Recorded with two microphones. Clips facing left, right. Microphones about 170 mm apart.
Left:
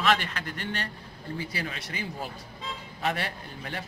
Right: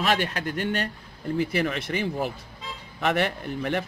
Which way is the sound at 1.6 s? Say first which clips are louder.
Right 9 dB; 70° right (ahead or behind).